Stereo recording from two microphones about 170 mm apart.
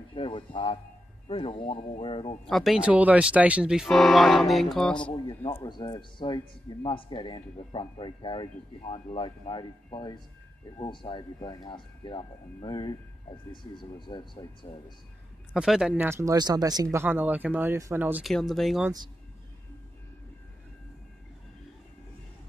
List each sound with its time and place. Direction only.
0.1 s speech: 30° left (ahead or behind)
2.4 s speech: centre (ahead or behind)
5.7 s speech: 25° left (ahead or behind)
15.5 s speech: 5° right (ahead or behind)
18.2 s speech: centre (ahead or behind)